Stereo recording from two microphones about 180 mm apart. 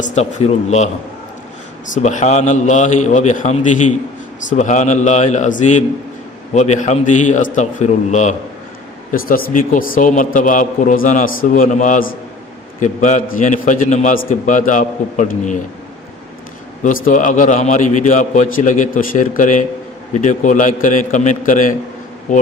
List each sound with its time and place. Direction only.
0.0 s a man's voice: 40° left (ahead or behind)
1.9 s a man's voice: 45° left (ahead or behind)
9.1 s a man's voice: 55° left (ahead or behind)
16.8 s a man's voice: 45° left (ahead or behind)